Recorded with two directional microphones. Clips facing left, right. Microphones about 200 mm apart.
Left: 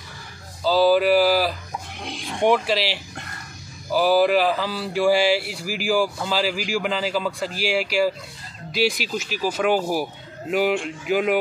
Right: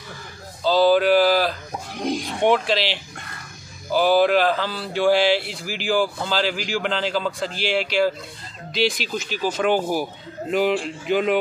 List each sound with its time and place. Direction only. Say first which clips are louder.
0.7 s a sound: right 1 dB; 5° left (ahead or behind)
2.0 s oink: right 15 dB; 40° right (ahead or behind)
2.4 s speech: even; 5° left (ahead or behind)